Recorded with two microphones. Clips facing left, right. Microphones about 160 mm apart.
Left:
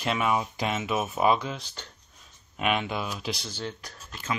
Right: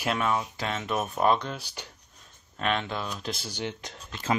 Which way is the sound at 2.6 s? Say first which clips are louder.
Left 1 dB; 10° left (ahead or behind).